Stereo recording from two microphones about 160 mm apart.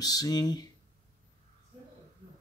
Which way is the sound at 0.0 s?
25° left (ahead or behind).